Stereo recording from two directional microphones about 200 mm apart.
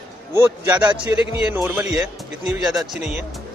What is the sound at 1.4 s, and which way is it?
Speech, 5° right (ahead or behind).